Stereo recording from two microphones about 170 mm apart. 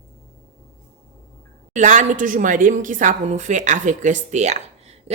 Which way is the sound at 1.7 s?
45° right (ahead or behind).